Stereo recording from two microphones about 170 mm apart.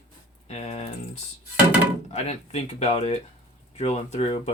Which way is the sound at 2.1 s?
40° left (ahead or behind).